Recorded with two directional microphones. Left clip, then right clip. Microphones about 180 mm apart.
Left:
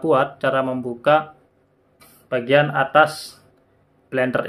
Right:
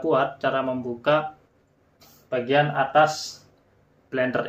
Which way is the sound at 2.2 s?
45° left (ahead or behind).